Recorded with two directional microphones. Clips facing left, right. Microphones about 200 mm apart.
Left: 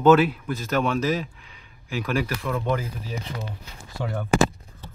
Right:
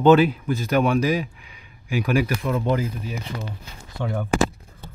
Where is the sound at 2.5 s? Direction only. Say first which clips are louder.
Right 2 dB; 30° right (ahead or behind).